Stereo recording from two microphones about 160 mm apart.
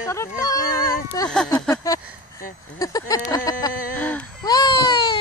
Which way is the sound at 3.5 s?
25° left (ahead or behind).